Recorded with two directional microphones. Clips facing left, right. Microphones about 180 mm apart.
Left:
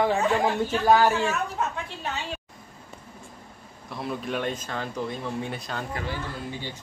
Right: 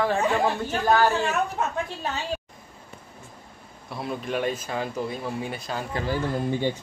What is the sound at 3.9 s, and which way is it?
Speech, centre (ahead or behind).